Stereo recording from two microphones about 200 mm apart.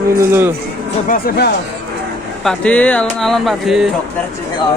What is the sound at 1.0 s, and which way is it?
Speech, 45° left (ahead or behind).